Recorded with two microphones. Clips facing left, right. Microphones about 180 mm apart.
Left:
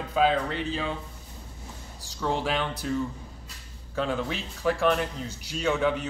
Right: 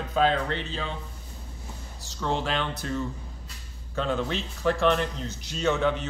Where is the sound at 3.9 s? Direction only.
5° left (ahead or behind).